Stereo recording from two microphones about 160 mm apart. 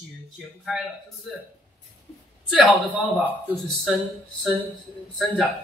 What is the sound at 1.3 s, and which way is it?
Speech, 5° right (ahead or behind).